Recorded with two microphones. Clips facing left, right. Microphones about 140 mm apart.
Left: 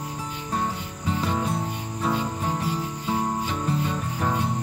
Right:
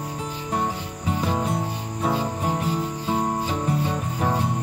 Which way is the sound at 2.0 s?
15° right (ahead or behind).